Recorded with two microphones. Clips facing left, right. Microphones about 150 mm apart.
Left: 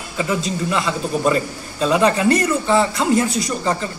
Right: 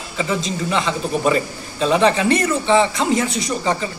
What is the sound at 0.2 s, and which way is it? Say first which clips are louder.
A man's voice: left 1 dB; 5° left (ahead or behind).